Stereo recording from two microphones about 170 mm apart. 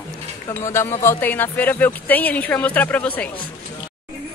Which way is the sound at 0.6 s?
15° left (ahead or behind).